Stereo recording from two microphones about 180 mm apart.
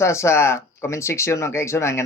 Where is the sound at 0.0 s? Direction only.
15° left (ahead or behind).